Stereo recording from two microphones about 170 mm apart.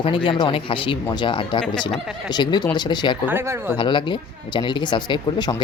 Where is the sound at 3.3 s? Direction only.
15° right (ahead or behind).